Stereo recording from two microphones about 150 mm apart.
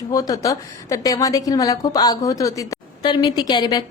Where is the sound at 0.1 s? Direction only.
25° left (ahead or behind).